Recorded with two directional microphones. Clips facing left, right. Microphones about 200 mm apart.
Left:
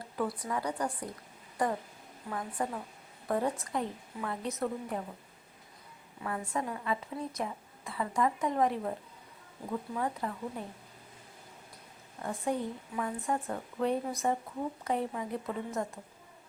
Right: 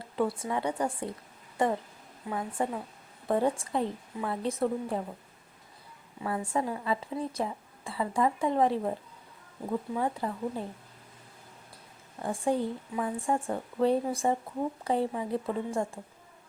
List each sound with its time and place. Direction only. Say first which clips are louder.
0.0 s a woman's voice: right 4 dB; 25° right (ahead or behind)
6.2 s a woman's voice: right 4 dB; 30° right (ahead or behind)
12.2 s a woman's voice: right 4 dB; 30° right (ahead or behind)